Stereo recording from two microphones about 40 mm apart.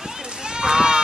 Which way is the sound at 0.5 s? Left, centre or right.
Centre.